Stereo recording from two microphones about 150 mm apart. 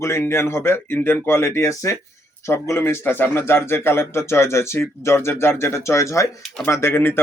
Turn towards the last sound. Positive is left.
turn(degrees=15)  # may be behind; listen again after turning